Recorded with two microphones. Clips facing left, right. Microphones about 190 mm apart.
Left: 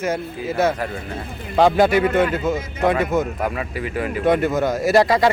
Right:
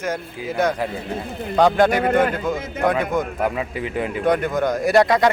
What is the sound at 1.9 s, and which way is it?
Speech, 45° right (ahead or behind).